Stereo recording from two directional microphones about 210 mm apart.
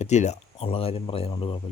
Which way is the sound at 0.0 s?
35° left (ahead or behind).